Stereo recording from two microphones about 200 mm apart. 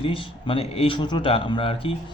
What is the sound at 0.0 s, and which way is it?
Speech, 25° left (ahead or behind).